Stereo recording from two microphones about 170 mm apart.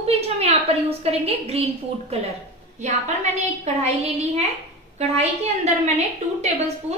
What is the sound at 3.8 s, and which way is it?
A woman's voice, 40° right (ahead or behind).